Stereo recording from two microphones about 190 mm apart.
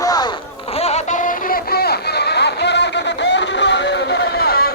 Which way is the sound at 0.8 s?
40° left (ahead or behind).